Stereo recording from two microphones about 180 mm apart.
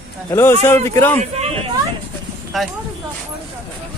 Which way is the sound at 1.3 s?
35° right (ahead or behind).